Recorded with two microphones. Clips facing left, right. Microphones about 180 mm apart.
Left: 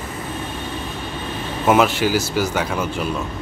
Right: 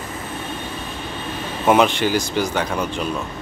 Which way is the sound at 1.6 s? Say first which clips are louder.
Even; centre (ahead or behind).